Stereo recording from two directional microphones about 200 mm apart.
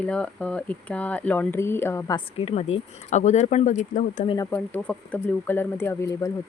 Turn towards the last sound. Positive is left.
turn(degrees=15)  # may be behind; listen again after turning